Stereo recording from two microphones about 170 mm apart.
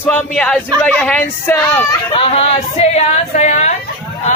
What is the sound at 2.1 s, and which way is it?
Speech, 40° left (ahead or behind).